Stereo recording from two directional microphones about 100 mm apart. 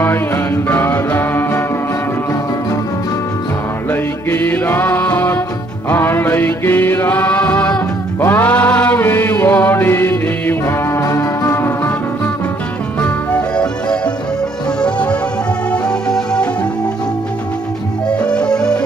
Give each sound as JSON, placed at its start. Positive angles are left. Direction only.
{"t": 0.7, "sound": "music", "side_deg": 20}
{"t": 3.9, "sound": "music", "side_deg": 20}
{"t": 8.2, "sound": "chant", "side_deg": 20}
{"t": 13.0, "sound": "music", "side_deg": 10}
{"t": 18.1, "sound": "music", "side_deg": 10}